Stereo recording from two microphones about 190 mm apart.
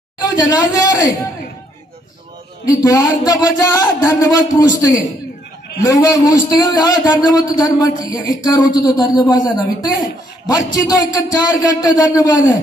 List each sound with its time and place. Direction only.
0.2 s speech: 20° left (ahead or behind)
2.8 s a man's voice: 20° left (ahead or behind)